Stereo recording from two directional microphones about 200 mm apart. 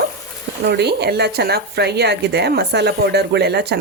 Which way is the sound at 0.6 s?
55° right (ahead or behind).